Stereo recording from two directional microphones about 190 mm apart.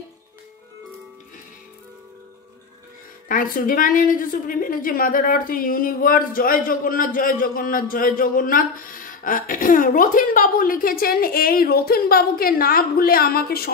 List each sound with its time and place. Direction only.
3.3 s a woman's voice: 45° left (ahead or behind)